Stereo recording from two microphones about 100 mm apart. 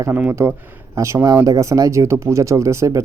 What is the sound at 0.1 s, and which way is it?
Speech, 20° right (ahead or behind).